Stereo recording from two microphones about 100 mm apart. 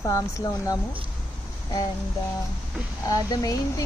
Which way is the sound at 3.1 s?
40° left (ahead or behind).